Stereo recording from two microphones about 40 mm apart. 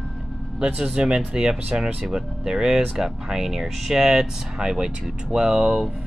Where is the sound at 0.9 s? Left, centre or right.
Right.